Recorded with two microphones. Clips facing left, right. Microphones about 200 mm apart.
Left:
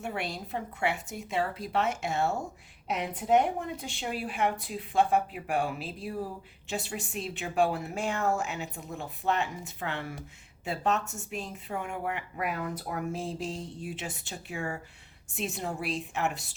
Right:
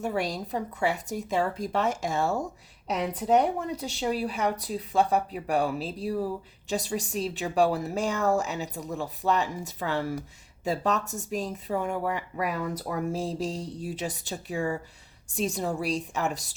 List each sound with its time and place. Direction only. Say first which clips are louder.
0.0 s speech: right 6 dB; 40° right (ahead or behind)